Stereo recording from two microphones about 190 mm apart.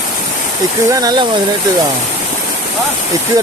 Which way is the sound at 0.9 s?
20° right (ahead or behind).